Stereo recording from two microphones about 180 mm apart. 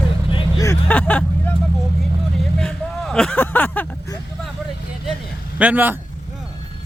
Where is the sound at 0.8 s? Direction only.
10° left (ahead or behind).